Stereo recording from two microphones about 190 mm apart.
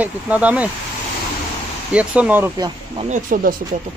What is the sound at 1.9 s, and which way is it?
Speech, 5° right (ahead or behind).